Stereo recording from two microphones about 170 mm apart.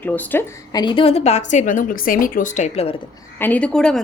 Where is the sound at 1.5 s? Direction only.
50° left (ahead or behind).